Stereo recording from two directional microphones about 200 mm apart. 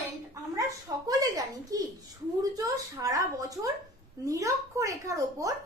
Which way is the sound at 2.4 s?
15° right (ahead or behind).